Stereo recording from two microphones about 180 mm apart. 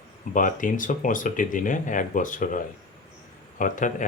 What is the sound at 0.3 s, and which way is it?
Speech, 45° left (ahead or behind).